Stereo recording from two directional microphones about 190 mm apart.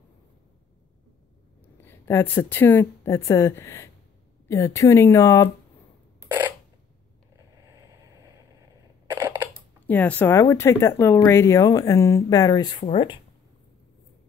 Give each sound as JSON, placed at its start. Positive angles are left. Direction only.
{"t": 1.9, "sound": "speech", "side_deg": 10}
{"t": 7.9, "sound": "a sound", "side_deg": -15}
{"t": 9.8, "sound": "speech", "side_deg": 10}